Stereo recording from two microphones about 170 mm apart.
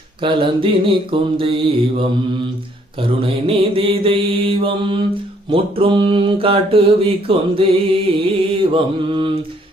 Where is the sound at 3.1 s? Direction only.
30° right (ahead or behind).